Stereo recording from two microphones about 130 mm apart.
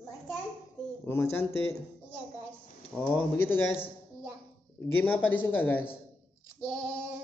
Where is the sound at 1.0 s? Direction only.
20° left (ahead or behind).